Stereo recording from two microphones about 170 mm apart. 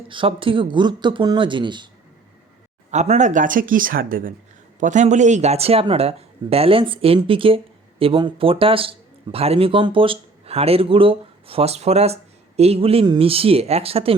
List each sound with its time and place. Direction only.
0.1 s speech: 30° right (ahead or behind)
2.9 s speech: 45° right (ahead or behind)